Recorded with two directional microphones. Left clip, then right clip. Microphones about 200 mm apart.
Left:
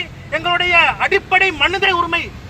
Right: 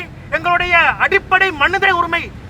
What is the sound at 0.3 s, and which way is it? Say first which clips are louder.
A man's voice: right 1 dB; 10° right (ahead or behind).